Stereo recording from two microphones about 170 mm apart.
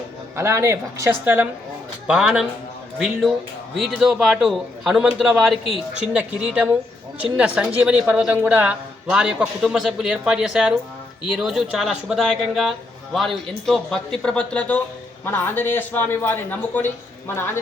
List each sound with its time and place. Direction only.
0.3 s a man's voice: 15° right (ahead or behind); by 17.6 s 15° left (ahead or behind)